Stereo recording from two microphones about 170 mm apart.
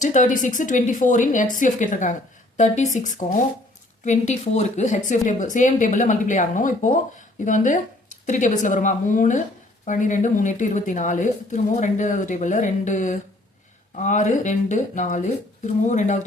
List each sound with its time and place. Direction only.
0.0 s speech: 45° left (ahead or behind)